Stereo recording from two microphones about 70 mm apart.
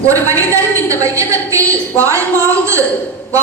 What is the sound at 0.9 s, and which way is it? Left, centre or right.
Speech, right.